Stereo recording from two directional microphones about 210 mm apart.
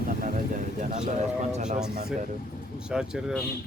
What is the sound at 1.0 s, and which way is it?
Speech, 35° right (ahead or behind).